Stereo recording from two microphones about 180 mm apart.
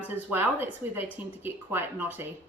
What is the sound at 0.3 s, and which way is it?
A woman's voice, 10° right (ahead or behind).